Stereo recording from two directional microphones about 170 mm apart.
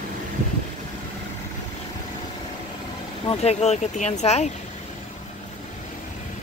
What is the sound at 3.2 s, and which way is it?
Speech, 40° left (ahead or behind).